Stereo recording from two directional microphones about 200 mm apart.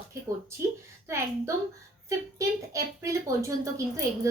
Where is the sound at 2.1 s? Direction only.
15° right (ahead or behind).